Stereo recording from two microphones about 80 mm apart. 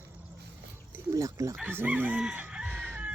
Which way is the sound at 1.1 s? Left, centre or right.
Right.